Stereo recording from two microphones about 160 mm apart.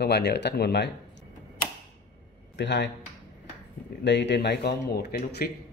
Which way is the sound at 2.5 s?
90° left.